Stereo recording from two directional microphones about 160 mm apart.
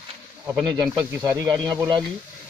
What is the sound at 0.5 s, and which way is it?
Speech, 5° right (ahead or behind).